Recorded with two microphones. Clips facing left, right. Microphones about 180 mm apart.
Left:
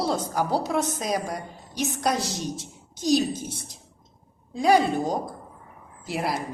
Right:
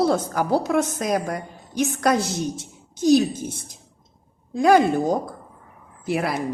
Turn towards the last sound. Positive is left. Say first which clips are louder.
# right 4 dB
turn(degrees=-55)  # may be behind; listen again after turning